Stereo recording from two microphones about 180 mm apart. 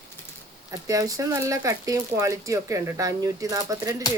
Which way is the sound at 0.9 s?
20° right (ahead or behind).